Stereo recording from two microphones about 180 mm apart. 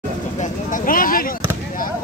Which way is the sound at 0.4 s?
45° left (ahead or behind).